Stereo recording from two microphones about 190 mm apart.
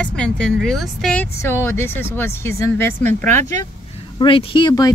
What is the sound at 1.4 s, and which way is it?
Speech, 15° left (ahead or behind).